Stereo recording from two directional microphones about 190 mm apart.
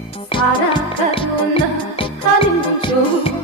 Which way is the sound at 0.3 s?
25° left (ahead or behind).